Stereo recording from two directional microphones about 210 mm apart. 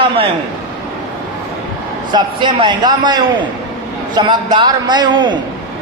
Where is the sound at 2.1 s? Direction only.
20° right (ahead or behind).